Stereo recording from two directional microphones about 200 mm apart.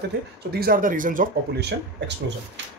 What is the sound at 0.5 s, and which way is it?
Speech, 50° right (ahead or behind).